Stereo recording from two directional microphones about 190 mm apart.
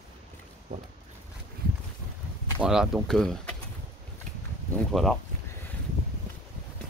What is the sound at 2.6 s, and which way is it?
Speech, 5° right (ahead or behind).